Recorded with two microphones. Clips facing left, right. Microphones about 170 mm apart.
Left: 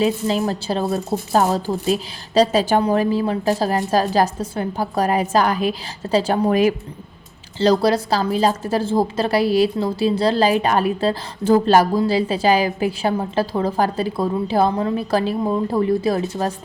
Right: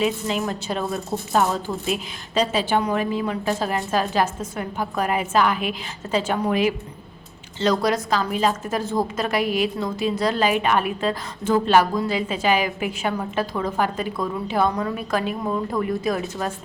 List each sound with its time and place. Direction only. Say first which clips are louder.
0.0 s a woman's voice: left 4 dB; 35° left (ahead or behind)